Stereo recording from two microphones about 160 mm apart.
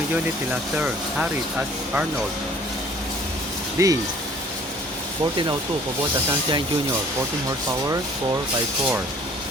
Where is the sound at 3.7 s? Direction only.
20° right (ahead or behind).